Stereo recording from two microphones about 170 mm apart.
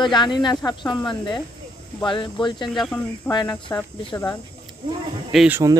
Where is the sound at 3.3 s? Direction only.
25° left (ahead or behind).